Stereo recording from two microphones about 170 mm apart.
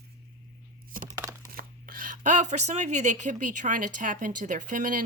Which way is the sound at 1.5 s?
55° right (ahead or behind).